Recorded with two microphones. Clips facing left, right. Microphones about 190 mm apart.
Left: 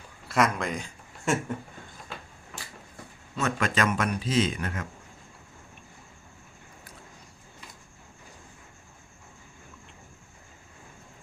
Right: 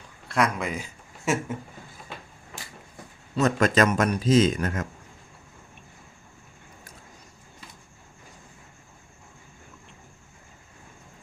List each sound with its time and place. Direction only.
0.3 s a man's voice: centre (ahead or behind)
3.3 s speech: 40° right (ahead or behind)